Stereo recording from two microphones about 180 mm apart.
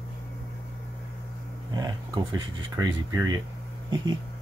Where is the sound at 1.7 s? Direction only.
20° right (ahead or behind).